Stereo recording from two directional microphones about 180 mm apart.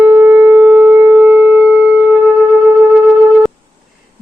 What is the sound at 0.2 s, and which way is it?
Shofar, centre (ahead or behind).